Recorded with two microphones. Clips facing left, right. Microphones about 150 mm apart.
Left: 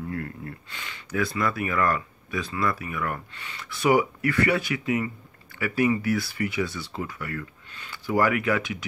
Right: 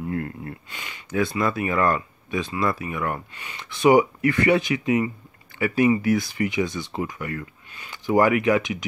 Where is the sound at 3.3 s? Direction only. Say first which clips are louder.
Right 1 dB; 15° right (ahead or behind).